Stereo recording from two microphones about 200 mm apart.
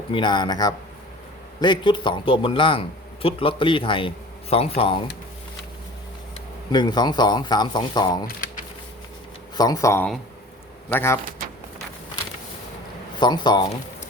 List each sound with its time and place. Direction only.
0.1 s speech: 25° left (ahead or behind)
6.7 s speech: 20° left (ahead or behind)
9.6 s speech: 20° left (ahead or behind)
13.1 s speech: 20° left (ahead or behind)